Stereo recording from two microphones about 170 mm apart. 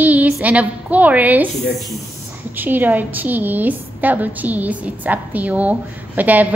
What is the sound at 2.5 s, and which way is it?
A woman's voice, 10° right (ahead or behind).